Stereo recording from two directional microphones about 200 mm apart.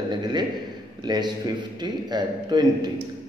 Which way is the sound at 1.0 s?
20° right (ahead or behind).